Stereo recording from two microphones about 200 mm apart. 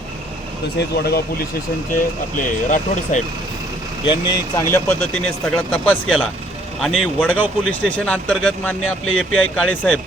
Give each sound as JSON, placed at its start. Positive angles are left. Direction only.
{"t": 0.8, "sound": "speech", "side_deg": 55}
{"t": 2.4, "sound": "speech", "side_deg": 40}
{"t": 4.0, "sound": "speech", "side_deg": 20}